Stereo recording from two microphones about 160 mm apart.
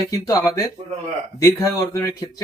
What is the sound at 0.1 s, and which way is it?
A man's voice, 20° left (ahead or behind).